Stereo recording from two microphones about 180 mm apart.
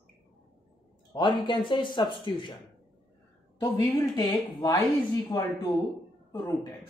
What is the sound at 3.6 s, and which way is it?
Speech, 20° left (ahead or behind).